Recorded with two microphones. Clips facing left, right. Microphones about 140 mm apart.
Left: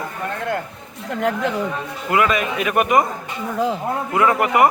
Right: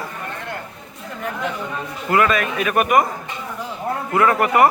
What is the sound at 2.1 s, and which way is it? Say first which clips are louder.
Speech: right 1 dB; 15° left (ahead or behind).